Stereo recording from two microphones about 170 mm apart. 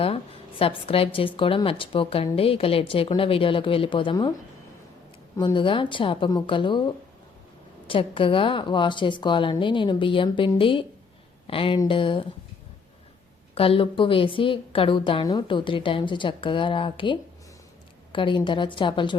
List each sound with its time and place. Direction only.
0.6 s a woman's voice: 35° left (ahead or behind)
5.5 s a woman's voice: 30° left (ahead or behind)
13.6 s a woman's voice: 35° left (ahead or behind)